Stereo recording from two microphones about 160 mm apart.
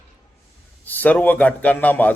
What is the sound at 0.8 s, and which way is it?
Speech, 10° left (ahead or behind).